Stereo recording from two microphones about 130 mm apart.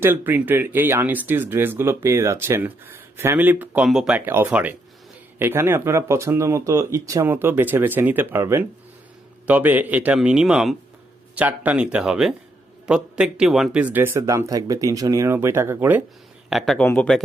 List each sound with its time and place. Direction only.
0.0 s speech: 15° right (ahead or behind)
4.3 s speech: 15° right (ahead or behind)
16.5 s speech: centre (ahead or behind)
16.8 s speech: 10° left (ahead or behind)